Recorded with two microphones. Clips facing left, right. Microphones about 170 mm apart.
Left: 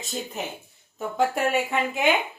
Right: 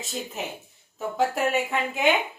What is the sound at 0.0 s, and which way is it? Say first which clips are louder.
A woman's voice: left 1 dB; 5° right (ahead or behind).